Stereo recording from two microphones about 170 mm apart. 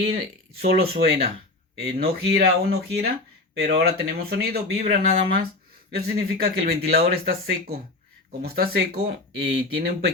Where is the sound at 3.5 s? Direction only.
70° right (ahead or behind).